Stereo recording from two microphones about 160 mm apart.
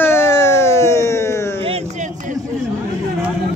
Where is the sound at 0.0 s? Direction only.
15° left (ahead or behind).